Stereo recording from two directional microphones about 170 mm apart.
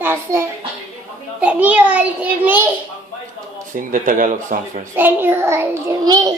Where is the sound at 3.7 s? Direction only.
50° right (ahead or behind).